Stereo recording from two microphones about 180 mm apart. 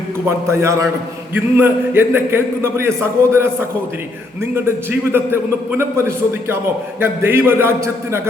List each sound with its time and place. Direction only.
0.3 s a man's voice: 15° right (ahead or behind)